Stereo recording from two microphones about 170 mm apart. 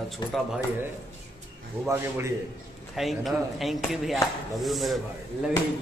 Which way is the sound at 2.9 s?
Centre (ahead or behind).